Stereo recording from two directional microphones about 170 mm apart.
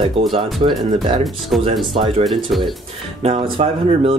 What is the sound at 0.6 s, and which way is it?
Speech, 30° right (ahead or behind).